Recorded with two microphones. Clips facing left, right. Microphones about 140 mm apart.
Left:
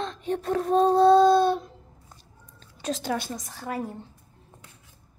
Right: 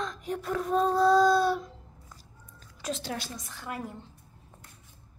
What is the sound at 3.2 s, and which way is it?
Speech, 45° left (ahead or behind).